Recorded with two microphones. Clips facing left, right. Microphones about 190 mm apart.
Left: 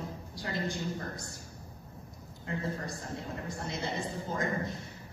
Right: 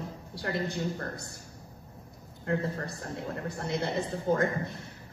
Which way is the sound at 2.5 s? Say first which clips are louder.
Right 5 dB; 60° right (ahead or behind).